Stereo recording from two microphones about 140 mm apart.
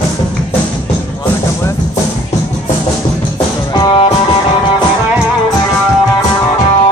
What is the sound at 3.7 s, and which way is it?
Music, 30° left (ahead or behind).